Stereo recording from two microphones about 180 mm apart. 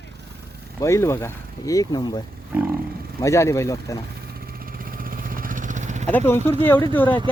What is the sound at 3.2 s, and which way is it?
Speech, 15° left (ahead or behind).